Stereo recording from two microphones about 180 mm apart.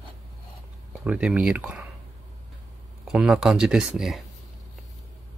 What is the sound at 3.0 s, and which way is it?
Speech, 5° right (ahead or behind).